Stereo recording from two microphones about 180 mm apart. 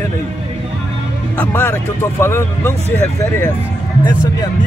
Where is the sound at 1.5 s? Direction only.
10° left (ahead or behind).